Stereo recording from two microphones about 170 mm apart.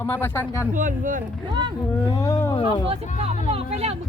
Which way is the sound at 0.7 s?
50° right (ahead or behind).